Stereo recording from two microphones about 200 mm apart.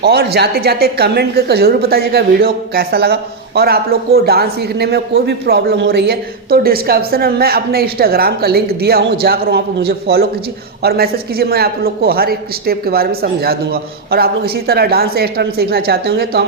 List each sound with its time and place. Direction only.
0.0 s a woman's voice: 55° right (ahead or behind)